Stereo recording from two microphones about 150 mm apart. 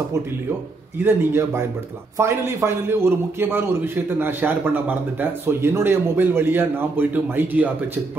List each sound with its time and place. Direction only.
1.0 s a man's voice: 15° right (ahead or behind)